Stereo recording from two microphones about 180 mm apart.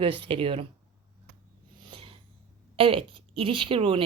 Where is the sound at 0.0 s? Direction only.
30° right (ahead or behind).